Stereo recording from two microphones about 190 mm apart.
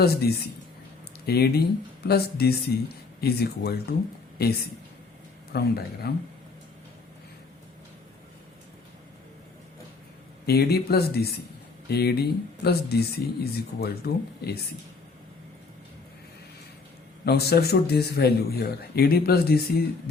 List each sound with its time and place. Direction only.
0.0 s a man's voice: 55° left (ahead or behind)
10.4 s a man's voice: 55° left (ahead or behind)
17.2 s a man's voice: 55° left (ahead or behind)